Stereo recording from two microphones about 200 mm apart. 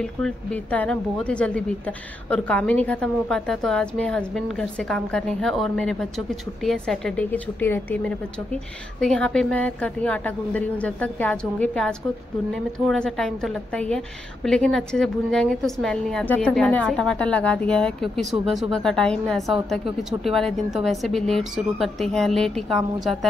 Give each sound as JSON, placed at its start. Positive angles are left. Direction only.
{"t": 0.2, "sound": "a woman's voice", "side_deg": 5}